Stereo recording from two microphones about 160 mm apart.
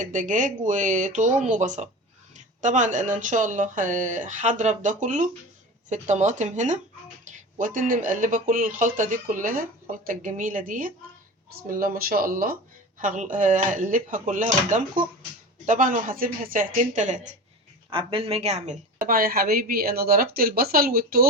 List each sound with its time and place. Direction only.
0.0 s a woman's voice: 55° right (ahead or behind)
17.9 s a woman's voice: 35° right (ahead or behind)
19.0 s speech: 65° right (ahead or behind)